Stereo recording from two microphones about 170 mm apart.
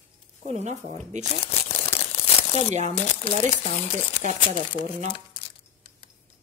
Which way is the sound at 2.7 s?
45° right (ahead or behind).